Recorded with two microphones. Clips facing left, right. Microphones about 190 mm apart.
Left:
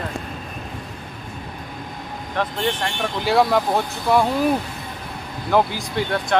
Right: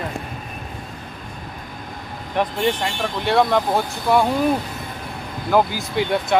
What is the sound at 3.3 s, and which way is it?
Speech, 5° left (ahead or behind).